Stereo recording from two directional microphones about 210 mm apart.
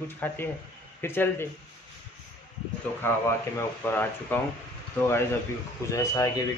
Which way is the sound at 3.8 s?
10° left (ahead or behind).